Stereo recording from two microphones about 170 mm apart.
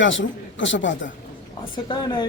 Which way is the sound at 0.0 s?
90° left.